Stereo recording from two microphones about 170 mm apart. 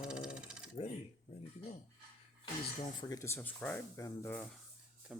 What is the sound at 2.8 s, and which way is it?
Speech, 25° left (ahead or behind).